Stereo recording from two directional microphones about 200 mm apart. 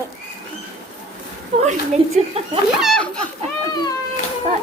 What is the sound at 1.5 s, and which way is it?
Speech, 30° right (ahead or behind).